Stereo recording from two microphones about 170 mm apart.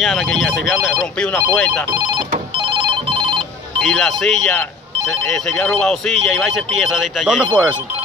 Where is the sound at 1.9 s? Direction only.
25° right (ahead or behind).